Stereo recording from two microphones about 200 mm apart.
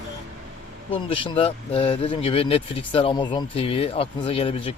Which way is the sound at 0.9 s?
25° left (ahead or behind).